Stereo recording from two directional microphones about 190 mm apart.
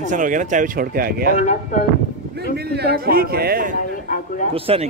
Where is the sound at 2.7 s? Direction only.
60° right (ahead or behind).